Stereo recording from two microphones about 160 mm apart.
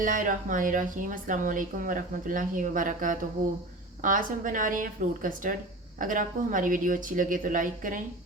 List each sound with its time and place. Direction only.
0.0 s speech: 55° right (ahead or behind)